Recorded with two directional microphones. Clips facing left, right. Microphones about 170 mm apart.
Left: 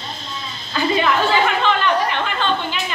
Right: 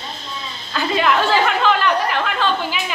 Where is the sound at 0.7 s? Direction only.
Centre (ahead or behind).